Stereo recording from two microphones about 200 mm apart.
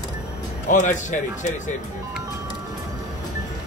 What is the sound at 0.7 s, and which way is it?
Speech, 40° left (ahead or behind).